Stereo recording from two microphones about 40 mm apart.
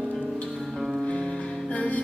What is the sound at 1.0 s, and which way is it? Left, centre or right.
Music, left.